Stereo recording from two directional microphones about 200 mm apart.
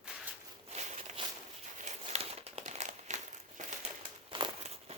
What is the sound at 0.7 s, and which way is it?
Walk, 35° right (ahead or behind).